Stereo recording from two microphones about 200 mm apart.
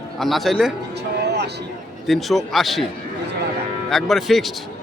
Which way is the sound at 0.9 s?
55° right (ahead or behind).